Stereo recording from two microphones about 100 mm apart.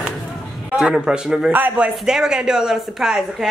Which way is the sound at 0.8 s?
5° right (ahead or behind).